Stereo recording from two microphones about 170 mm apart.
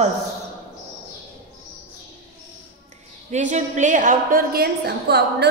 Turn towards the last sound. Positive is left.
turn(degrees=-70)  # may be behind; listen again after turning